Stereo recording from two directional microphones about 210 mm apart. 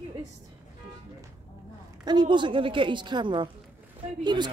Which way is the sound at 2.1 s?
20° right (ahead or behind).